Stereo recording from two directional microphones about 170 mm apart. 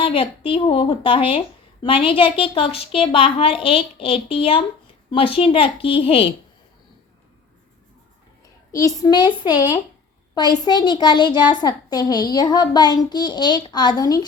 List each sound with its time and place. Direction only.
0.0 s a woman's voice: 30° left (ahead or behind)
8.7 s a child's voice: 20° left (ahead or behind)